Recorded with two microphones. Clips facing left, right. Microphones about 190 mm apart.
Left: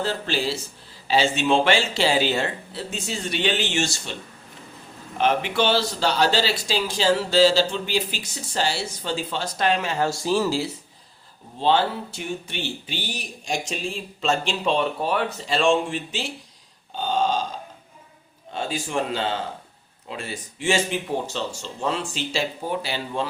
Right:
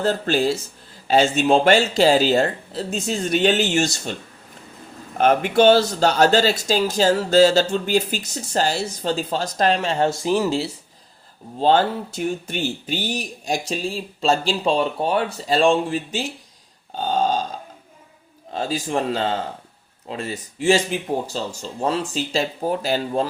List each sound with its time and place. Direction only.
0.0 s speech: 45° right (ahead or behind)
5.1 s speech: 45° right (ahead or behind); by 10.1 s 30° right (ahead or behind)
10.1 s speech: 15° right (ahead or behind)
11.6 s speech: 45° right (ahead or behind)
17.1 s burping: 40° right (ahead or behind)
18.5 s speech: 35° right (ahead or behind)